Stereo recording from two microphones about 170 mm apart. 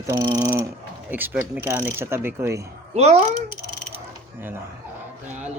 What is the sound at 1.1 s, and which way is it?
Speech, 10° right (ahead or behind).